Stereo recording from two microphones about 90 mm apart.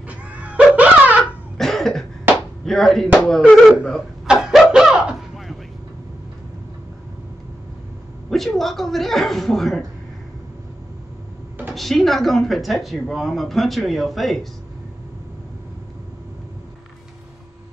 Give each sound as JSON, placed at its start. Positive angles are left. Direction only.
{"t": 0.1, "sound": "dog", "side_deg": -15}
{"t": 1.6, "sound": "cough", "side_deg": 5}
{"t": 2.6, "sound": "speech", "side_deg": 5}
{"t": 4.3, "sound": "a sound", "side_deg": -5}
{"t": 8.3, "sound": "speech", "side_deg": 5}
{"t": 11.7, "sound": "speech", "side_deg": 0}